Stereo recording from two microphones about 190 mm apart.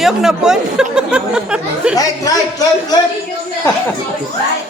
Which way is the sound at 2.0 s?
15° left (ahead or behind).